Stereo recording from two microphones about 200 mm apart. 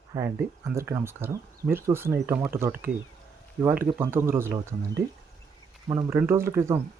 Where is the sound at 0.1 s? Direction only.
15° right (ahead or behind).